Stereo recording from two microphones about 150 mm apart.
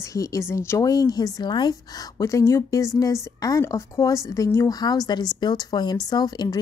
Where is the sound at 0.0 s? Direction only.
20° left (ahead or behind).